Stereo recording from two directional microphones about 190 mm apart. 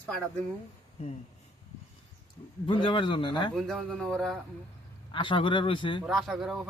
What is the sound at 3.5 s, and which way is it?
Speech, centre (ahead or behind).